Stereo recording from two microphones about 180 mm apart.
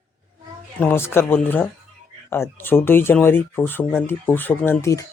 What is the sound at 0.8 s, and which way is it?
Speech, 10° left (ahead or behind).